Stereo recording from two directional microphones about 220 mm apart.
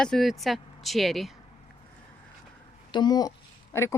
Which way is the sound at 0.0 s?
Centre (ahead or behind).